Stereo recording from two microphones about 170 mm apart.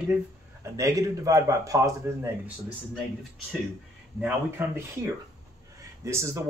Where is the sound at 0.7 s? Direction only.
20° right (ahead or behind).